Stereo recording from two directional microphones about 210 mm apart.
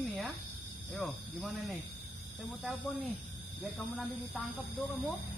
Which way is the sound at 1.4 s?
Centre (ahead or behind).